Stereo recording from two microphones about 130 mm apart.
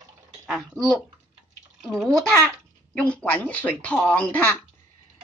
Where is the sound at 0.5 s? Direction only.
Centre (ahead or behind); by 4.6 s 15° left (ahead or behind).